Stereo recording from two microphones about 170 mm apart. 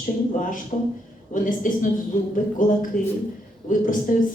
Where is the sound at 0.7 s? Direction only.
40° left (ahead or behind).